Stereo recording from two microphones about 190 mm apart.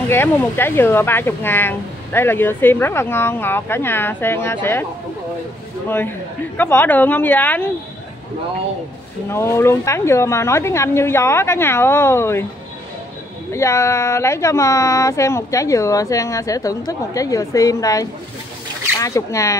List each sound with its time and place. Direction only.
0.1 s speech: 10° left (ahead or behind)
5.9 s speech: 10° left (ahead or behind)
9.3 s speech: 15° left (ahead or behind)
13.5 s speech: 15° left (ahead or behind)